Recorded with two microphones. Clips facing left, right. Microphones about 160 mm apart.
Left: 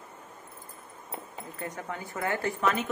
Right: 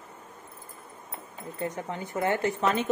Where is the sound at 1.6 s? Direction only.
25° right (ahead or behind).